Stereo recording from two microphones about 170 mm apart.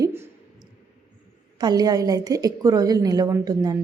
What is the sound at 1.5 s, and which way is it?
A woman's voice, 25° right (ahead or behind).